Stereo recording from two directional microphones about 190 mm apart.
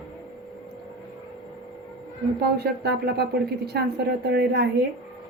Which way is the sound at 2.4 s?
55° right (ahead or behind).